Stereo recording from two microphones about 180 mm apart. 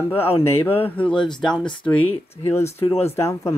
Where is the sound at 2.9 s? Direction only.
35° left (ahead or behind).